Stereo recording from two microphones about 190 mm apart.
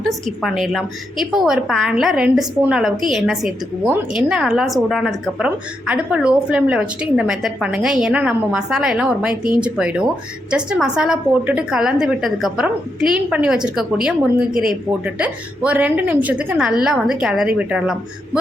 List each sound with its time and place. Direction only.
0.0 s a woman's voice: centre (ahead or behind)
14.5 s speech: 50° right (ahead or behind)
15.0 s a woman's voice: 5° right (ahead or behind)